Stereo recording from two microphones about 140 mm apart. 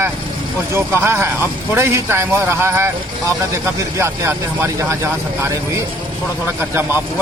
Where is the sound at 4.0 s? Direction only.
20° right (ahead or behind).